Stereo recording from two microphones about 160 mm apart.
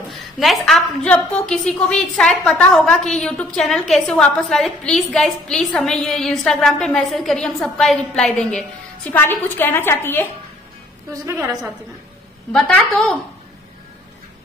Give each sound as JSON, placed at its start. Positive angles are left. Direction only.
{"t": 0.1, "sound": "a woman's voice", "side_deg": 0}
{"t": 11.3, "sound": "a woman's voice", "side_deg": -10}
{"t": 12.5, "sound": "a woman's voice", "side_deg": 5}